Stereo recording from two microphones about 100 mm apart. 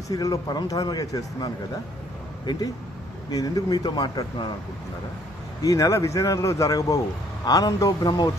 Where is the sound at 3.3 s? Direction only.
40° left (ahead or behind).